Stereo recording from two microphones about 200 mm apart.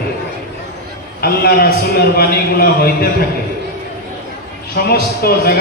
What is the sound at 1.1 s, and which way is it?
A man's voice, 50° left (ahead or behind).